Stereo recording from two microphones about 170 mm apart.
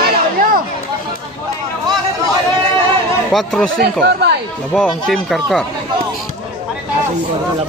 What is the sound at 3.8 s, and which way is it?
Speech, 75° right (ahead or behind).